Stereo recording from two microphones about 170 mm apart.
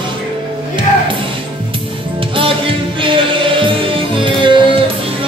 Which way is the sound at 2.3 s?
30° right (ahead or behind).